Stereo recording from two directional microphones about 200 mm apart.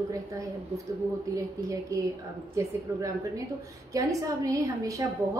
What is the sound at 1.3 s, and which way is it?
Speech, 15° right (ahead or behind).